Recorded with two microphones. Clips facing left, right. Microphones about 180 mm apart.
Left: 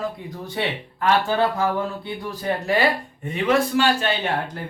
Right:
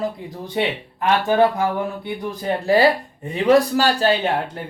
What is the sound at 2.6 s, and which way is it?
A man's voice, 35° right (ahead or behind).